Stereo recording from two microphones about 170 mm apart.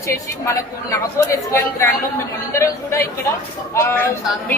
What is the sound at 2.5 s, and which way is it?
A woman's voice, 15° left (ahead or behind).